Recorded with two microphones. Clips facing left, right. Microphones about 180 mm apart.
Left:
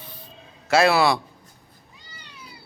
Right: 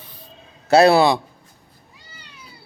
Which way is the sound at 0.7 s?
35° right (ahead or behind).